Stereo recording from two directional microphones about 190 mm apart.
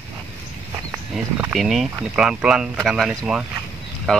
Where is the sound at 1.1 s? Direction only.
5° right (ahead or behind).